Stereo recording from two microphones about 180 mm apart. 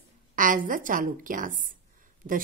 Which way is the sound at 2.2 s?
35° right (ahead or behind).